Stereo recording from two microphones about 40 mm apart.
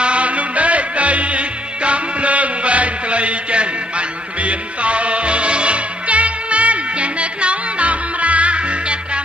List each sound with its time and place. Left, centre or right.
0.0 s music: right